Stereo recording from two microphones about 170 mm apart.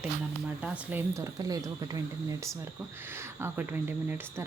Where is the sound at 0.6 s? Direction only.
10° right (ahead or behind).